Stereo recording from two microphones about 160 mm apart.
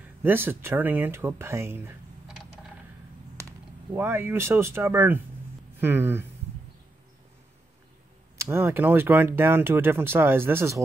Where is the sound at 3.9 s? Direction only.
15° right (ahead or behind).